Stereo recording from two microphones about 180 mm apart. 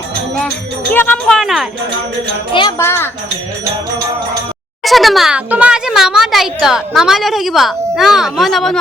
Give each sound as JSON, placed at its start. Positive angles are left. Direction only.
{"t": 0.9, "sound": "speech", "side_deg": 10}
{"t": 2.5, "sound": "speech", "side_deg": 25}
{"t": 4.8, "sound": "speech", "side_deg": 0}